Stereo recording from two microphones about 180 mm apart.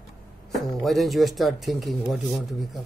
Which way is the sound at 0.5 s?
Centre (ahead or behind).